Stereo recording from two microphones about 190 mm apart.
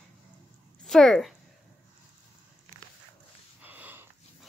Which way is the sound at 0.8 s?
Centre (ahead or behind).